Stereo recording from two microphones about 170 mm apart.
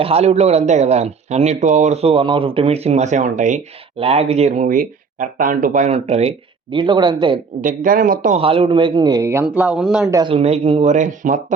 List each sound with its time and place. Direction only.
0.0 s speech: 35° right (ahead or behind)
3.9 s speech: 35° right (ahead or behind)
7.6 s speech: 50° right (ahead or behind)
8.4 s speech: 35° right (ahead or behind); by 10.1 s 5° right (ahead or behind)
10.1 s speech: 20° right (ahead or behind)
10.3 s speech: 35° right (ahead or behind)